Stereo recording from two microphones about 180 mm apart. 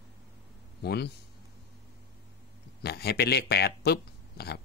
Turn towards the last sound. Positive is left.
turn(degrees=65)  # may be behind; listen again after turning